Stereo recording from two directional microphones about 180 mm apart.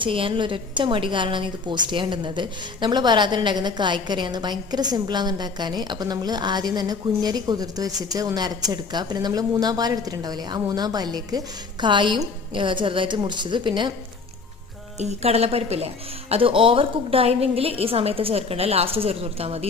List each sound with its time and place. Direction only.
0.0 s a woman's voice: 30° right (ahead or behind)
14.9 s a woman's voice: 35° right (ahead or behind)